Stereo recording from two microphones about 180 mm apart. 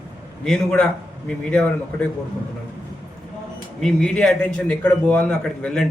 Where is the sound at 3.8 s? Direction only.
5° left (ahead or behind).